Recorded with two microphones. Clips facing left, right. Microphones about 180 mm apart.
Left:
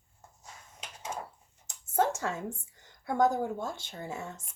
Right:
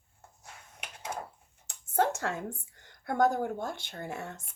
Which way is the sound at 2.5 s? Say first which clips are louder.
Left 1 dB; 60° right (ahead or behind).